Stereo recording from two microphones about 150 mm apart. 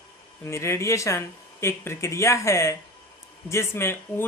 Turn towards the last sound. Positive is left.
turn(degrees=15)  # may be behind; listen again after turning